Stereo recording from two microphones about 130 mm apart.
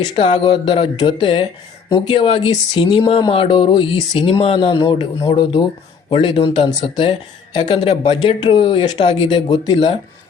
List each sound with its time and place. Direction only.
0.0 s speech: 40° left (ahead or behind)